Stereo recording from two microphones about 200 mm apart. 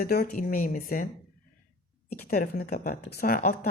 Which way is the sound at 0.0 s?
50° left (ahead or behind).